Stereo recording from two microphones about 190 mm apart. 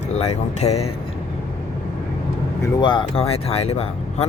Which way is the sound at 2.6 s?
25° left (ahead or behind).